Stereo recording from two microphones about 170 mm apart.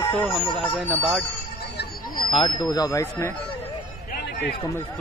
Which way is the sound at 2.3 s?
30° left (ahead or behind).